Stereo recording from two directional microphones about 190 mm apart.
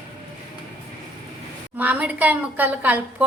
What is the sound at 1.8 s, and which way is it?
A woman's voice, 10° right (ahead or behind).